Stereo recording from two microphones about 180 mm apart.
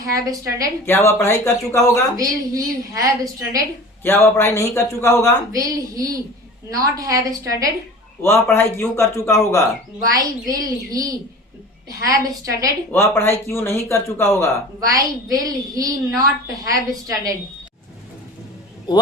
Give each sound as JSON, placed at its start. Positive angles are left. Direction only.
{"t": 0.0, "sound": "a woman's voice", "side_deg": -20}
{"t": 0.9, "sound": "speech", "side_deg": 15}
{"t": 2.1, "sound": "a woman's voice", "side_deg": -20}
{"t": 4.0, "sound": "speech", "side_deg": 15}
{"t": 5.5, "sound": "a woman's voice", "side_deg": -20}
{"t": 8.2, "sound": "speech", "side_deg": 15}
{"t": 10.1, "sound": "a woman's voice", "side_deg": -20}
{"t": 12.9, "sound": "speech", "side_deg": 15}
{"t": 14.8, "sound": "a woman's voice", "side_deg": -20}
{"t": 18.9, "sound": "speech", "side_deg": 25}